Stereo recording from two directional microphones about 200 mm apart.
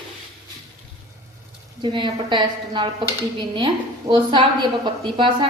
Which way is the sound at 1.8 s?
25° right (ahead or behind).